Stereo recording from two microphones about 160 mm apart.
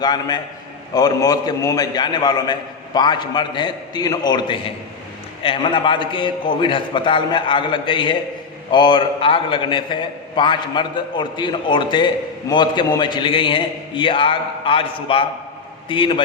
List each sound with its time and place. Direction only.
0.0 s a man's voice: 25° left (ahead or behind)